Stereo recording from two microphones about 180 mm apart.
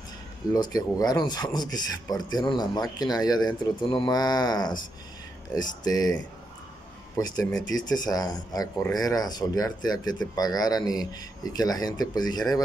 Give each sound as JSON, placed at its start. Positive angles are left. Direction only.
{"t": 0.5, "sound": "speech", "side_deg": 20}
{"t": 7.2, "sound": "speech", "side_deg": 20}